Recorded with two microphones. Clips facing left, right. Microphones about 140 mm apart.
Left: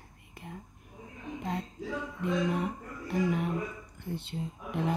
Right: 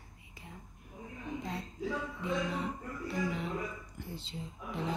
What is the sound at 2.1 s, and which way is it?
Music, 55° left (ahead or behind).